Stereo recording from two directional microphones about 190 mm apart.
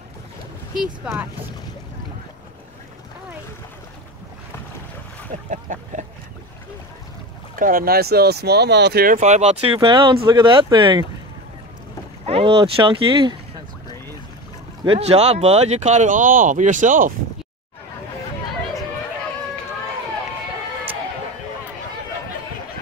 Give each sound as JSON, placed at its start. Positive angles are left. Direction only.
{"t": 0.7, "sound": "speech", "side_deg": 0}
{"t": 5.5, "sound": "a sound", "side_deg": -40}
{"t": 7.5, "sound": "speech", "side_deg": -45}
{"t": 12.3, "sound": "speech", "side_deg": -30}
{"t": 14.9, "sound": "speech", "side_deg": -35}